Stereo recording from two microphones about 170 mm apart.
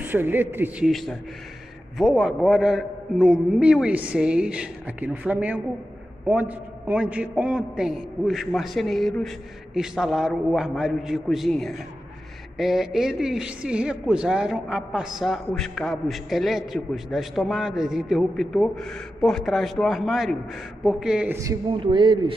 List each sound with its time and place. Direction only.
0.0 s a woman's voice: 10° right (ahead or behind)
0.8 s a man's voice: centre (ahead or behind)
21.7 s speech: 30° right (ahead or behind)